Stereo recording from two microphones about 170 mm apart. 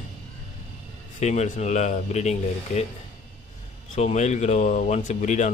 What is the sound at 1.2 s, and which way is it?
Speech, 40° left (ahead or behind).